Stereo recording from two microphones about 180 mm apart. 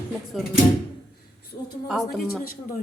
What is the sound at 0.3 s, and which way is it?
Speech, centre (ahead or behind).